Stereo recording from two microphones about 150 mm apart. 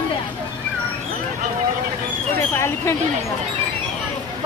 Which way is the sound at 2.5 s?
20° left (ahead or behind).